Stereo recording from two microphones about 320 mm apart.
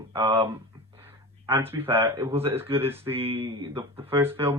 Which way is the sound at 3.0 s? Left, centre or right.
Centre.